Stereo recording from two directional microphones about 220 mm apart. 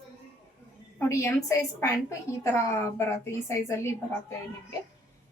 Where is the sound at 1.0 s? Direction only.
10° left (ahead or behind).